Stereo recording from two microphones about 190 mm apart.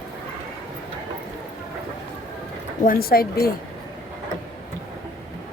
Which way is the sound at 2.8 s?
50° left (ahead or behind).